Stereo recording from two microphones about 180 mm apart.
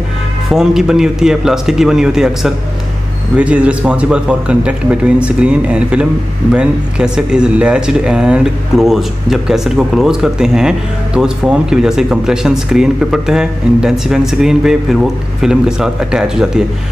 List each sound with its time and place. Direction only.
0.5 s a man's voice: 5° right (ahead or behind)